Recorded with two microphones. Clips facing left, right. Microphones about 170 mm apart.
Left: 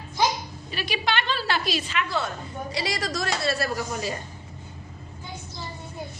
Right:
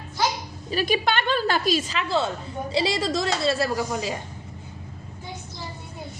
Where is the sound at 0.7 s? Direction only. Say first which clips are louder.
Right 5 dB; 45° right (ahead or behind); by 3.7 s 25° right (ahead or behind).